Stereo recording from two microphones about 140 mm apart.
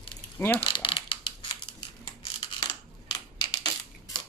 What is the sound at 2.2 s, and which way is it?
Mechanisms, 35° left (ahead or behind).